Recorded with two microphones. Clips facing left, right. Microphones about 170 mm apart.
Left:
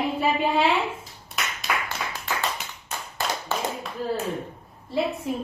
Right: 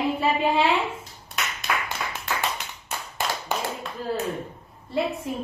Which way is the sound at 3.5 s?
15° right (ahead or behind).